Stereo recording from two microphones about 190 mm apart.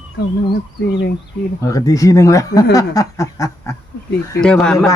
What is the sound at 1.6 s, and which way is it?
Speech, 15° left (ahead or behind).